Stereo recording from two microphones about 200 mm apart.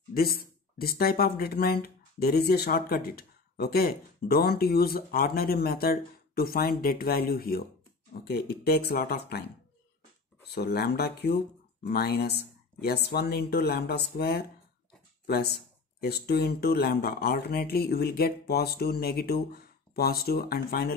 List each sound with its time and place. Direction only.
0.1 s speech: 50° left (ahead or behind)
10.5 s speech: 50° left (ahead or behind)